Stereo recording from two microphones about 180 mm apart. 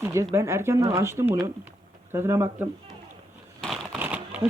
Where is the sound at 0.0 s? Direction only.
15° right (ahead or behind).